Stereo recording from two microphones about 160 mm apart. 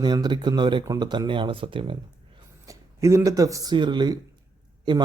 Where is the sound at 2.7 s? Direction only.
20° right (ahead or behind).